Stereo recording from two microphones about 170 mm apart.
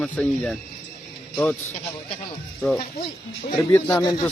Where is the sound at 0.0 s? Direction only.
5° left (ahead or behind).